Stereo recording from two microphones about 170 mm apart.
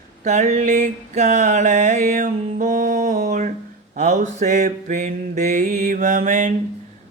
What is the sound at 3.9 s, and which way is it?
Mantra, 45° right (ahead or behind).